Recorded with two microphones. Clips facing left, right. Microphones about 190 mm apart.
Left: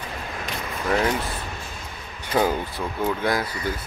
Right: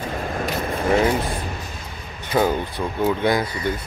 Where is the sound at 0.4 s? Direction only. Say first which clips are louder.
Right 7 dB; 50° right (ahead or behind).